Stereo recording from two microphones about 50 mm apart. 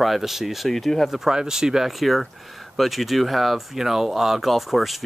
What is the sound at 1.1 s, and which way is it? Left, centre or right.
Speech, centre.